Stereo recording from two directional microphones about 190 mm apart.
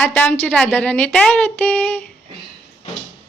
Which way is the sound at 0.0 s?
10° left (ahead or behind).